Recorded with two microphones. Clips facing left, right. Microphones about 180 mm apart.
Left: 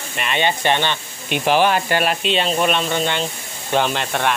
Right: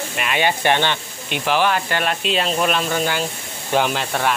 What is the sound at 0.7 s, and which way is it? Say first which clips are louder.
Speech: right 1 dB; 15° left (ahead or behind).